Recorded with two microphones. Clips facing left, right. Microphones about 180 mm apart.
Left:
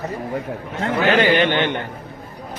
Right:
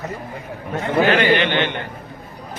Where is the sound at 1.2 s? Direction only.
45° left (ahead or behind).